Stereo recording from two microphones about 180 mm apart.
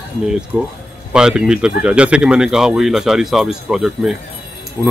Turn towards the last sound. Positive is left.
turn(degrees=5)  # may be behind; listen again after turning